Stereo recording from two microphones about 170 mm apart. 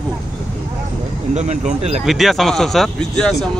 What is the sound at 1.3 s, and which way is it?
Speech, 45° right (ahead or behind).